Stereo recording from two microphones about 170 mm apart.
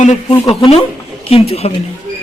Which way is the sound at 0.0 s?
45° left (ahead or behind).